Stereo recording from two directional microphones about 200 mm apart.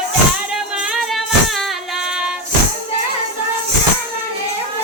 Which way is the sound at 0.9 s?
Centre (ahead or behind).